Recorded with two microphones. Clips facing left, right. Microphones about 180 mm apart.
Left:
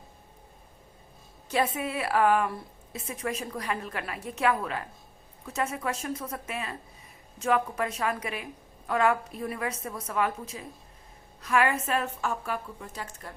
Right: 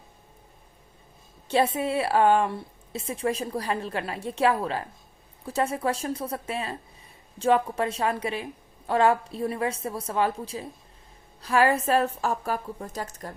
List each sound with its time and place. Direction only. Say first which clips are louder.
1.5 s a woman's voice: right 4 dB; 30° right (ahead or behind)